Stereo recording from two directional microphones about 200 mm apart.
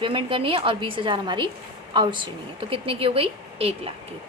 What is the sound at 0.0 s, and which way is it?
A woman's voice, 25° right (ahead or behind).